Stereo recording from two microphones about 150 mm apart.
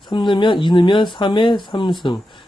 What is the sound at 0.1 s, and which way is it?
Speech, 30° left (ahead or behind).